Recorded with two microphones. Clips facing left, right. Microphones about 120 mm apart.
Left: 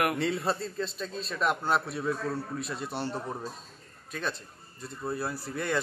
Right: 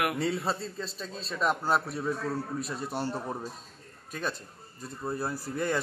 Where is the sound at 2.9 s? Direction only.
10° right (ahead or behind).